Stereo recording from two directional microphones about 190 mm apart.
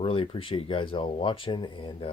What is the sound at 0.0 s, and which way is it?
Speech, 30° left (ahead or behind).